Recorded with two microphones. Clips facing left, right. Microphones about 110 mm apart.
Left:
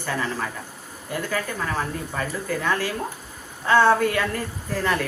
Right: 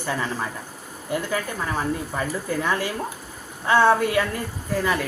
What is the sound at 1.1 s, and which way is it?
Speech, 20° right (ahead or behind).